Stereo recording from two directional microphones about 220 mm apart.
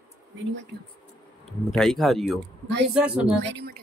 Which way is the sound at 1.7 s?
Centre (ahead or behind).